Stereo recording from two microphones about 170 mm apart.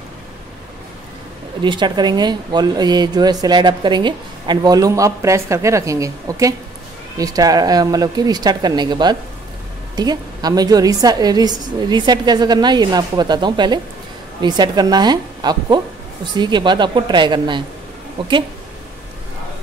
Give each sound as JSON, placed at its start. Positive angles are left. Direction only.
{"t": 1.6, "sound": "speech", "side_deg": -25}